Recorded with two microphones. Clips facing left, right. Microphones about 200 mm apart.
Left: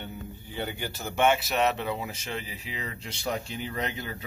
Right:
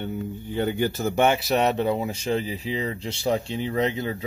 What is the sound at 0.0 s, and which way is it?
Speech, 50° right (ahead or behind).